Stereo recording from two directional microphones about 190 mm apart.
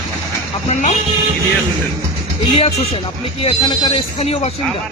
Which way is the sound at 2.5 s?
30° left (ahead or behind).